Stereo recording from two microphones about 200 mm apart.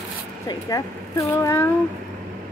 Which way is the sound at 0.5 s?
15° left (ahead or behind).